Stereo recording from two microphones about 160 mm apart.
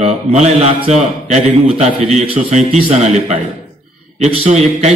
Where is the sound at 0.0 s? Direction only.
40° right (ahead or behind).